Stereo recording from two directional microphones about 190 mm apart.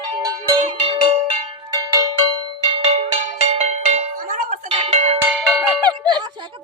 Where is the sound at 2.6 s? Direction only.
30° right (ahead or behind).